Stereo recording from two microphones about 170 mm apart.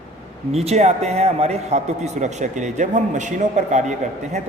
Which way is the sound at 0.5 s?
40° right (ahead or behind).